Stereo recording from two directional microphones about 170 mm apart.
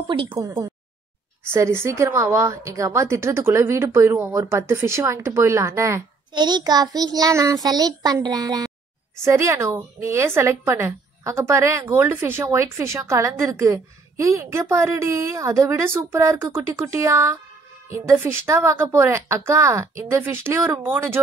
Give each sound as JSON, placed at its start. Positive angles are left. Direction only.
{"t": 0.1, "sound": "speech", "side_deg": -30}
{"t": 0.4, "sound": "a woman's voice", "side_deg": -20}